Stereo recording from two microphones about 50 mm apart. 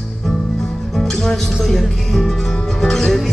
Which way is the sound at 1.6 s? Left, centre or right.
Centre.